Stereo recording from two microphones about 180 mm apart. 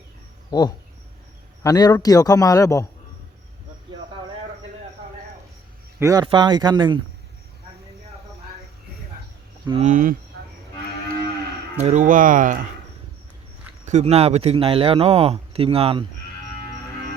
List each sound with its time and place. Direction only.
0.5 s a man's voice: 25° left (ahead or behind)
6.0 s speech: 15° right (ahead or behind)
9.8 s speech: 45° right (ahead or behind)
11.8 s speech: 40° right (ahead or behind)
13.8 s a man's voice: 40° right (ahead or behind)